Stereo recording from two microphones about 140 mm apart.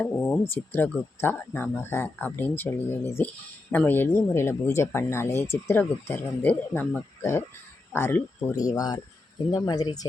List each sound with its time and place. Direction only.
0.0 s speech: 10° left (ahead or behind); by 10.1 s 25° left (ahead or behind)